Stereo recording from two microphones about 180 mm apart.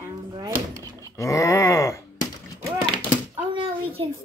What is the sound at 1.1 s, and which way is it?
Groan, 15° left (ahead or behind).